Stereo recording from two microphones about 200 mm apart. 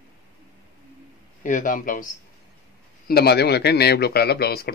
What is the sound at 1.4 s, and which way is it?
Speech, 40° left (ahead or behind).